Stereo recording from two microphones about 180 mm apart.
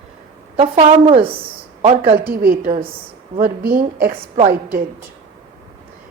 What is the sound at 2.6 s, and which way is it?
Speech, 35° right (ahead or behind).